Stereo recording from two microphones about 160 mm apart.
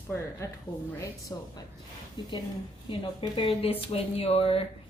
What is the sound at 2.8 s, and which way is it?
A woman's voice, 30° left (ahead or behind).